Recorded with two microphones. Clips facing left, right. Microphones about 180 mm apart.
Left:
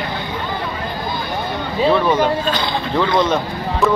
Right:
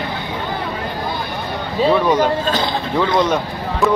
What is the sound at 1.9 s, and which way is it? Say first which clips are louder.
Speech: right 1 dB; 10° right (ahead or behind).